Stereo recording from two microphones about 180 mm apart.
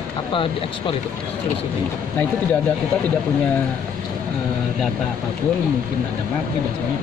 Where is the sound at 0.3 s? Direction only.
30° left (ahead or behind).